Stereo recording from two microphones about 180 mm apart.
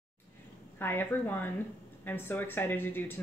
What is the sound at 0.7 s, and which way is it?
Speech, 10° left (ahead or behind).